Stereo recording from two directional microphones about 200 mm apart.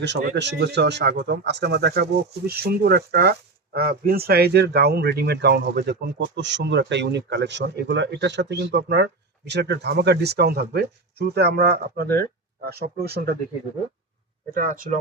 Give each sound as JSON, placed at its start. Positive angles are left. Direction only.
{"t": 0.0, "sound": "speech", "side_deg": -60}